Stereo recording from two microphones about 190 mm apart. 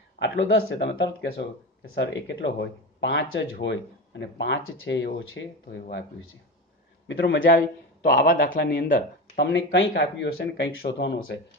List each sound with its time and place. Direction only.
0.2 s speech: 65° left (ahead or behind)
7.1 s speech: 70° left (ahead or behind)
7.4 s a man's voice: 50° left (ahead or behind)
9.4 s speech: 70° left (ahead or behind)